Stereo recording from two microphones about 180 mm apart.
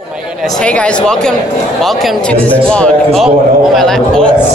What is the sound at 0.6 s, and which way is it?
Speech, 5° left (ahead or behind).